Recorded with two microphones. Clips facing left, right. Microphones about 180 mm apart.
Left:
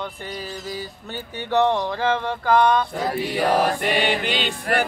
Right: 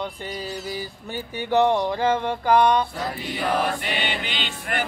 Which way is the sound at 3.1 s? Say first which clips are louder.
Left 8 dB; 45° left (ahead or behind).